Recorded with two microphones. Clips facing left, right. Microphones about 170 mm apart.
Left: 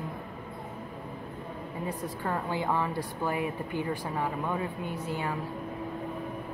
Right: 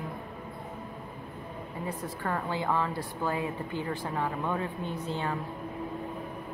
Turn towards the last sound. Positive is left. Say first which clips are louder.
# even
turn(degrees=10)  # may be behind; listen again after turning